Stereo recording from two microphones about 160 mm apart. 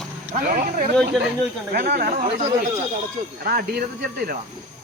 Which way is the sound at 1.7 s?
80° right.